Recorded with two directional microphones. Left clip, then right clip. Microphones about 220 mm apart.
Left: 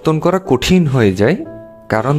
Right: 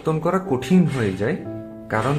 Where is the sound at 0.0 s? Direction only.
45° left (ahead or behind).